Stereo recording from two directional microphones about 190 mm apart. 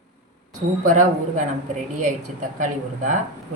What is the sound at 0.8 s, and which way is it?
Speech, 40° right (ahead or behind).